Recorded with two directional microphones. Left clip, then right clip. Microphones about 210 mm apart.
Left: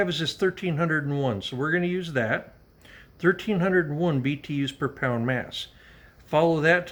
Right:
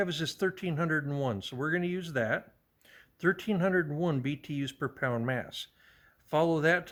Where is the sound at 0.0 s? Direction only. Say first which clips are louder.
Left 6 dB; 50° right (ahead or behind).